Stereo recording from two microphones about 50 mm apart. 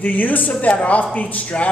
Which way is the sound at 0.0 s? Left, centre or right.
Left.